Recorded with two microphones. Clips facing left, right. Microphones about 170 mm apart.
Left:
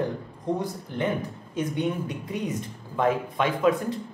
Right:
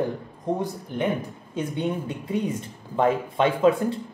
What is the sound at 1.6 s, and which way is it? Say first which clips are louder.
Speech: even; 30° right (ahead or behind).